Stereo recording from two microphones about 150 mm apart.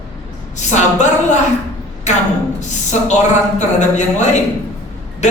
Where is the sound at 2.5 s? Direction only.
50° left (ahead or behind).